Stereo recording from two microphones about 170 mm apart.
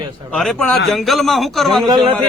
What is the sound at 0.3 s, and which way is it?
A man's voice, 5° left (ahead or behind).